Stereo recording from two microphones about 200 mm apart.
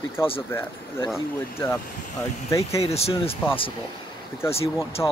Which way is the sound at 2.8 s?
30° left (ahead or behind).